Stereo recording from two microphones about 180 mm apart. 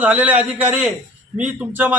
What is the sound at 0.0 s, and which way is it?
A man's voice, 10° right (ahead or behind).